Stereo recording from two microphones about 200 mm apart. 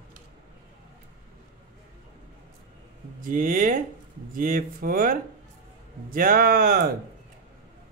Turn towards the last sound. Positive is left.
turn(degrees=-50)  # may be behind; listen again after turning